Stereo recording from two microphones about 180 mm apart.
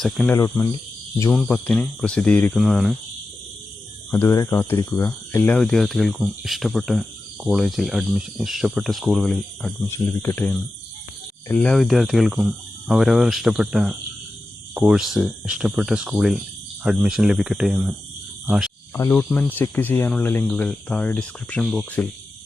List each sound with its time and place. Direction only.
0.0 s speech: centre (ahead or behind)
0.3 s speech: 15° left (ahead or behind)
1.3 s speech: 5° left (ahead or behind)
4.1 s speech: 15° left (ahead or behind)
9.8 s speech: 15° left (ahead or behind); by 18.7 s 5° right (ahead or behind)
18.9 s speech: 15° left (ahead or behind)